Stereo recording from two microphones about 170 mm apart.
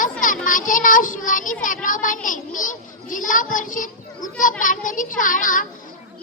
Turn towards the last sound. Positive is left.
turn(degrees=50)  # may be behind; listen again after turning